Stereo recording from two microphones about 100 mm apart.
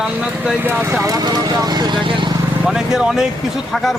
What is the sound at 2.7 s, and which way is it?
Speech, 5° right (ahead or behind).